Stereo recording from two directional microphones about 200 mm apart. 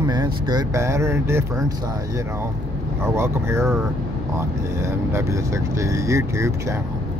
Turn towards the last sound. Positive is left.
turn(degrees=-15)  # may be behind; listen again after turning